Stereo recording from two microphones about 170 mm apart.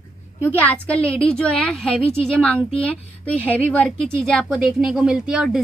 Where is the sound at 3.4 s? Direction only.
10° left (ahead or behind).